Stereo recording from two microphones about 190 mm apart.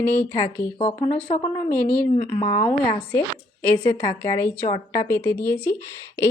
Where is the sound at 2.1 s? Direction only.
40° left (ahead or behind); by 5.4 s 10° left (ahead or behind).